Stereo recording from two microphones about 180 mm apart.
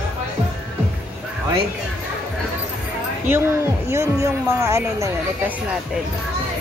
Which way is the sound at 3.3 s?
15° right (ahead or behind).